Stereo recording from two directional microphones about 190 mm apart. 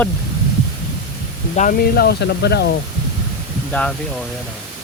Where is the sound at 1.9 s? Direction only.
55° left (ahead or behind).